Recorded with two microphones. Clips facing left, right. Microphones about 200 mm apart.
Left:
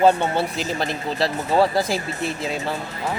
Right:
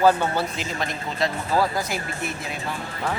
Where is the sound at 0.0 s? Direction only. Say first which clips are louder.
Left 2 dB; 25° left (ahead or behind).